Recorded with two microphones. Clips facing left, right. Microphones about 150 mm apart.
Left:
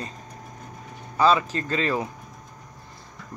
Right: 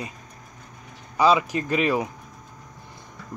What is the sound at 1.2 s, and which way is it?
Speech, 15° right (ahead or behind).